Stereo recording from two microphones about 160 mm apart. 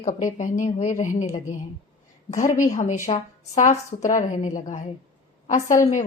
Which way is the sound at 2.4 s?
55° left (ahead or behind).